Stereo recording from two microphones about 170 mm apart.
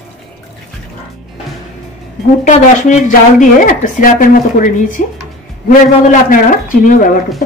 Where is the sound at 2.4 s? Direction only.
45° left (ahead or behind).